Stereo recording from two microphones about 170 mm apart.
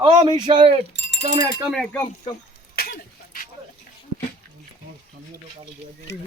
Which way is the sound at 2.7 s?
60° left (ahead or behind).